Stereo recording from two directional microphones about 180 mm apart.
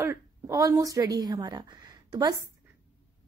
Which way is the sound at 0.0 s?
15° right (ahead or behind).